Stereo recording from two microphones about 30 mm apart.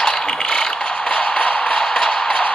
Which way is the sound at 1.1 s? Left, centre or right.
Left.